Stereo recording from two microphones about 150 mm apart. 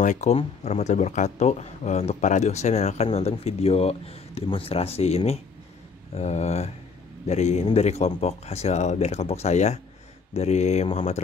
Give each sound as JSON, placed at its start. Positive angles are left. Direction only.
{"t": 0.0, "sound": "speech", "side_deg": 50}